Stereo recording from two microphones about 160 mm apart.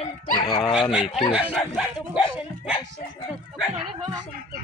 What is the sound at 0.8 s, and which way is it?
Speech, 5° right (ahead or behind).